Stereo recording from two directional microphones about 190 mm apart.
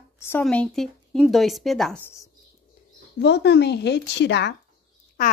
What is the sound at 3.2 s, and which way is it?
A woman's voice, 65° left (ahead or behind).